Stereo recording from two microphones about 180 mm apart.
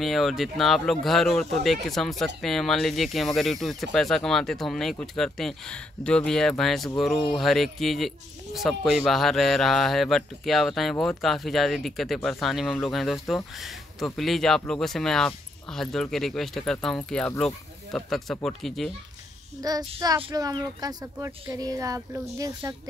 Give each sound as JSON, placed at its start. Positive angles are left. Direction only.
{"t": 0.0, "sound": "speech", "side_deg": 0}
{"t": 19.6, "sound": "a child's voice", "side_deg": -20}